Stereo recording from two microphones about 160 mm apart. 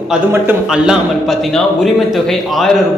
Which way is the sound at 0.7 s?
5° right (ahead or behind).